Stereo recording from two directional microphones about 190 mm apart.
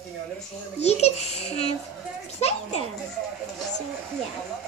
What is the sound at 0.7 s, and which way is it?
A child's voice, 35° left (ahead or behind).